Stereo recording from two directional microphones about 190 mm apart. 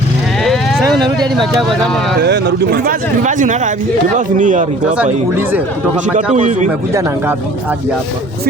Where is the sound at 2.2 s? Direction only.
65° right (ahead or behind); by 4.7 s 40° right (ahead or behind).